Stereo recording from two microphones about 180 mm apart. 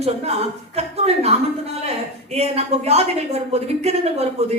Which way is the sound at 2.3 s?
35° right (ahead or behind).